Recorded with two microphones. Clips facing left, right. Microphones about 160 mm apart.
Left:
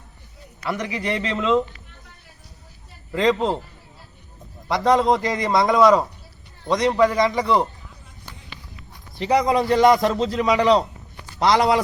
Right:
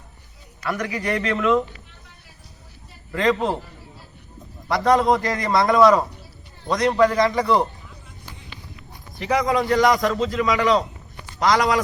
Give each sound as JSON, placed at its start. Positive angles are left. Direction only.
{"t": 0.6, "sound": "a man's voice", "side_deg": 20}
{"t": 3.1, "sound": "a man's voice", "side_deg": 20}
{"t": 4.7, "sound": "a man's voice", "side_deg": 20}
{"t": 9.1, "sound": "a man's voice", "side_deg": 30}